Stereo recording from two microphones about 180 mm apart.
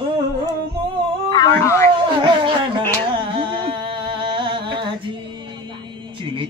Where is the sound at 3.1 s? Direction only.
25° right (ahead or behind).